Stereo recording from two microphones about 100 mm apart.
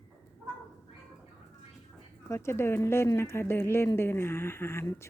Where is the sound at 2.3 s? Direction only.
25° left (ahead or behind).